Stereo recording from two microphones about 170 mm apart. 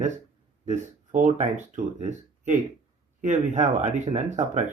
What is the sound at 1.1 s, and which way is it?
Speech, 45° right (ahead or behind).